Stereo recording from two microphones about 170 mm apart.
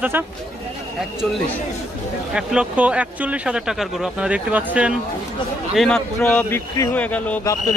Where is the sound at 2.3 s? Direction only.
5° right (ahead or behind).